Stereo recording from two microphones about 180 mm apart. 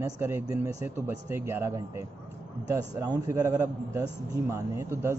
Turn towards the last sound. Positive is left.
turn(degrees=-15)  # may be behind; listen again after turning